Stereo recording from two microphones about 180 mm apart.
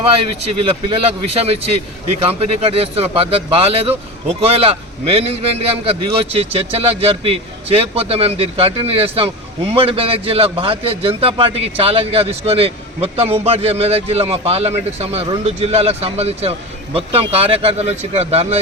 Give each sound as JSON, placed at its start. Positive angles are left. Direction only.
{"t": 0.6, "sound": "a man's voice", "side_deg": -30}